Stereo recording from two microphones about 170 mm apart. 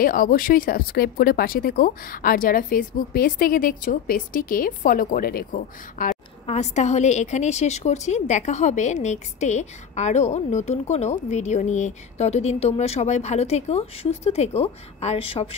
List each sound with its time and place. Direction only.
0.0 s speech: 55° left (ahead or behind)
6.4 s a woman's voice: 40° left (ahead or behind)